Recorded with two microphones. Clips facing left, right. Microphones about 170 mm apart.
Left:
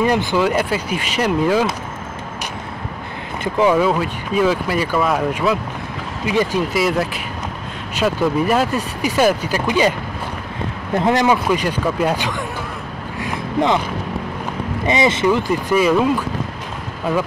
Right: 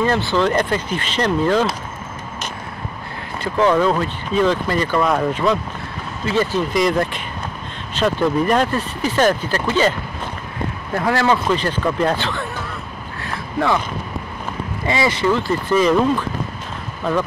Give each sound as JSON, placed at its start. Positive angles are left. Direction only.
{"t": 0.0, "sound": "speech", "side_deg": 15}
{"t": 3.5, "sound": "speech", "side_deg": 10}
{"t": 11.0, "sound": "speech", "side_deg": 20}
{"t": 13.2, "sound": "a sound", "side_deg": 20}
{"t": 14.9, "sound": "speech", "side_deg": 20}